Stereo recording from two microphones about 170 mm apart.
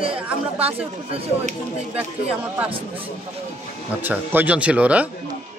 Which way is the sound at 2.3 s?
5° right (ahead or behind).